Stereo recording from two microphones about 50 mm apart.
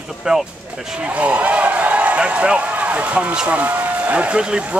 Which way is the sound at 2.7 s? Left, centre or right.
Right.